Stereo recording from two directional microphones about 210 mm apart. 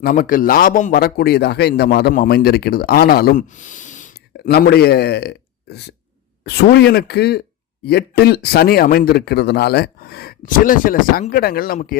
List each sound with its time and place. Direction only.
0.0 s a man's voice: 40° left (ahead or behind)